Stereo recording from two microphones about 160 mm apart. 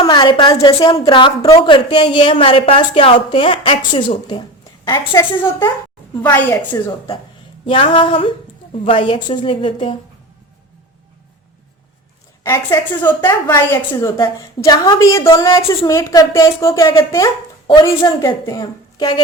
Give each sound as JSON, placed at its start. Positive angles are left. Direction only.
{"t": 0.0, "sound": "a woman's voice", "side_deg": 30}
{"t": 5.4, "sound": "a woman's voice", "side_deg": 15}
{"t": 7.7, "sound": "a woman's voice", "side_deg": 35}
{"t": 12.4, "sound": "a woman's voice", "side_deg": 20}